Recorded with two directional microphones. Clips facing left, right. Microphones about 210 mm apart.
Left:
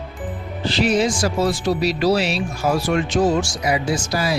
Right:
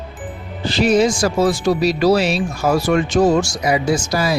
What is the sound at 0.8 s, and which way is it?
Speech, 45° right (ahead or behind).